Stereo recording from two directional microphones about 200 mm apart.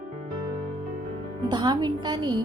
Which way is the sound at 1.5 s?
20° right (ahead or behind).